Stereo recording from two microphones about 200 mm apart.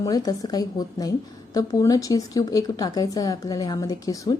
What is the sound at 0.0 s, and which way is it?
Speech, 20° left (ahead or behind).